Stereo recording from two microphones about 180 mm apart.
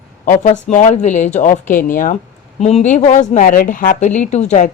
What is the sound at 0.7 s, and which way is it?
A woman's voice, 40° left (ahead or behind).